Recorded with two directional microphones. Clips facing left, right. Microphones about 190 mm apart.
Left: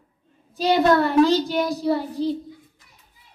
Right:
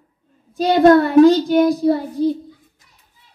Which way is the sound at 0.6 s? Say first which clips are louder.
Right 6 dB; 50° right (ahead or behind).